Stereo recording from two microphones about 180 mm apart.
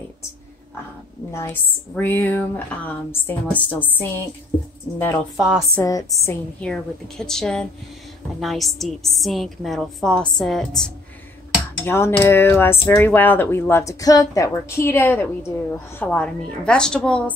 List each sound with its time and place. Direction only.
1.3 s speech: 15° left (ahead or behind)
5.4 s a woman's voice: 5° right (ahead or behind)
5.8 s speech: 15° left (ahead or behind)
6.6 s a woman's voice: centre (ahead or behind)
11.8 s a woman's voice: 15° left (ahead or behind)